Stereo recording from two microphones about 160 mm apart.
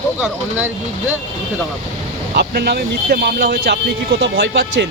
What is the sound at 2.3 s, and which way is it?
Speech, 85° right.